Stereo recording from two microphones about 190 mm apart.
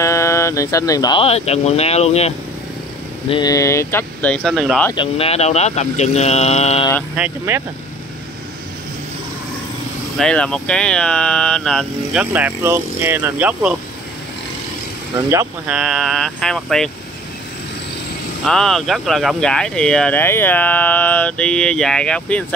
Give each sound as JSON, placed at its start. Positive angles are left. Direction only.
{"t": 0.0, "sound": "speech", "side_deg": 15}
{"t": 3.3, "sound": "speech", "side_deg": 20}
{"t": 4.9, "sound": "speech", "side_deg": 30}
{"t": 7.2, "sound": "speech", "side_deg": -10}
{"t": 10.1, "sound": "speech", "side_deg": 5}
{"t": 15.2, "sound": "speech", "side_deg": -10}
{"t": 18.4, "sound": "speech", "side_deg": 5}